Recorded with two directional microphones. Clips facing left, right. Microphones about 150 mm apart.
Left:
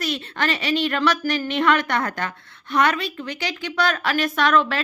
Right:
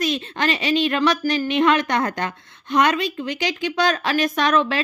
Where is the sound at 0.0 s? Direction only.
20° right (ahead or behind).